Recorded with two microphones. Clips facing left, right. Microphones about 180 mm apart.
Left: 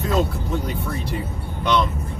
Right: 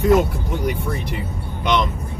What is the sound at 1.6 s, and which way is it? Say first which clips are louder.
Speech: even; 15° right (ahead or behind).